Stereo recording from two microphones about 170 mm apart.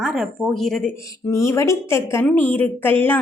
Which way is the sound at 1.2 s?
15° left (ahead or behind).